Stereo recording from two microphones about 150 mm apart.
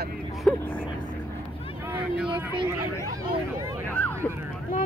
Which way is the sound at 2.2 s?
35° right (ahead or behind).